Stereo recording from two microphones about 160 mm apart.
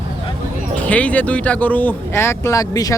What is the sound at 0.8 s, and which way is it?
Speech, 10° left (ahead or behind).